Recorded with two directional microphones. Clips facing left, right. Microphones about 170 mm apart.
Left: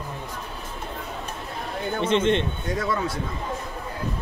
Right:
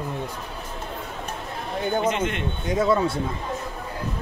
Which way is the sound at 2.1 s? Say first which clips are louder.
Left 5 dB; 25° left (ahead or behind).